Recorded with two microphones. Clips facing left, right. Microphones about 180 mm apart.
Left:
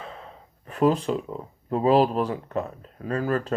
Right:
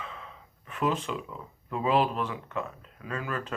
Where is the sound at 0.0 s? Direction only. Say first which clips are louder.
Left 3 dB; 40° left (ahead or behind).